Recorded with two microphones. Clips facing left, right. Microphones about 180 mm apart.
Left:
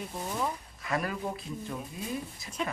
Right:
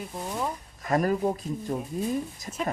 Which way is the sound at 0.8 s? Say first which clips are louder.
Right 8 dB; 45° right (ahead or behind).